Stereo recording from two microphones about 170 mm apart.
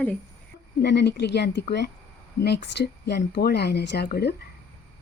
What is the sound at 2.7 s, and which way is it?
Speech, 75° left (ahead or behind).